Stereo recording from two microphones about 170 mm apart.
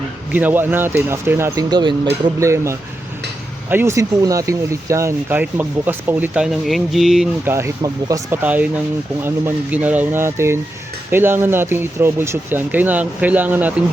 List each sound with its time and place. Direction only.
0.3 s speech: 10° right (ahead or behind)
7.4 s speech: 15° right (ahead or behind)
8.4 s speech: 10° right (ahead or behind)